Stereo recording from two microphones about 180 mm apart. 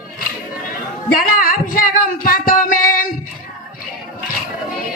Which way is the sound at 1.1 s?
50° left (ahead or behind).